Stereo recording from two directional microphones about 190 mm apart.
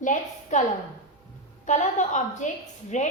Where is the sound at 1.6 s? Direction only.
40° left (ahead or behind).